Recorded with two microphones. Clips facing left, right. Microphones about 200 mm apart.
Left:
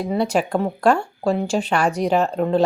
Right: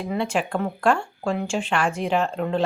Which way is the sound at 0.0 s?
40° left (ahead or behind).